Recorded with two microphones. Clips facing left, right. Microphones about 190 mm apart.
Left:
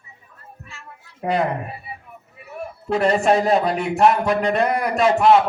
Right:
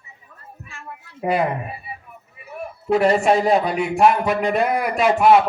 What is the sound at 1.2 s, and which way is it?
Speech, 5° right (ahead or behind).